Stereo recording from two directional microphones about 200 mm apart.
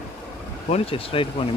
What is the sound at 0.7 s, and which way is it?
Speech, 30° left (ahead or behind).